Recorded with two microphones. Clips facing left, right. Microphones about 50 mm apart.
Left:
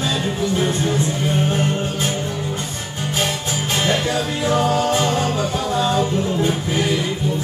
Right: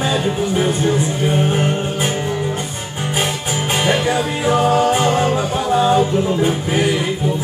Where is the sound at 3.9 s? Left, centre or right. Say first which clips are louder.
Right 4 dB; right.